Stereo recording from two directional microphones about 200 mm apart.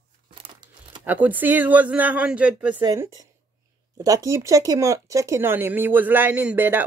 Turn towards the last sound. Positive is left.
turn(degrees=-10)  # may be behind; listen again after turning